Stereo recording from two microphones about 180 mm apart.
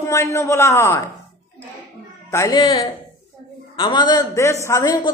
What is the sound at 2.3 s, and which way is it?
Speech, 20° left (ahead or behind).